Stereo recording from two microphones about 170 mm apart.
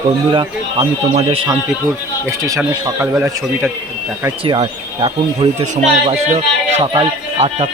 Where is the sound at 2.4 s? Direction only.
20° right (ahead or behind).